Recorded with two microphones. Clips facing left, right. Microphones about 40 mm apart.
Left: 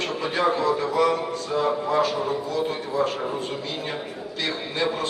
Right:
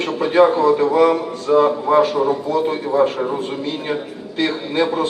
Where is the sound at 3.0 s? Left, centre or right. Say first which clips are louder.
Right 7 dB; centre.